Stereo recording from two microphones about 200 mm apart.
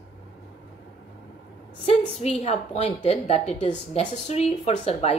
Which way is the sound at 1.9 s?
35° left (ahead or behind).